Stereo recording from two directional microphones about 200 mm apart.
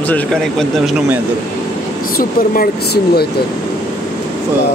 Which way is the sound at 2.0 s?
45° left (ahead or behind).